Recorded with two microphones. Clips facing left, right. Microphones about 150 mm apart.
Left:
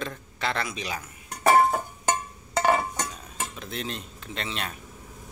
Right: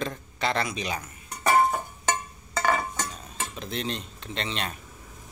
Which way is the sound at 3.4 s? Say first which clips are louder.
Right 2 dB; 5° left (ahead or behind).